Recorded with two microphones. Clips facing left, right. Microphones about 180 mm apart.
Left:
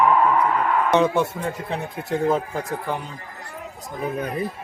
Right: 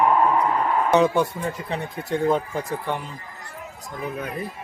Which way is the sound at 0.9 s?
Centre (ahead or behind).